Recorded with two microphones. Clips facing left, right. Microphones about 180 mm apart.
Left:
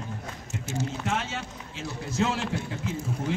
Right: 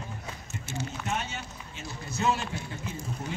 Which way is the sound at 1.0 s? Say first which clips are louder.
Left 3 dB; 90° left.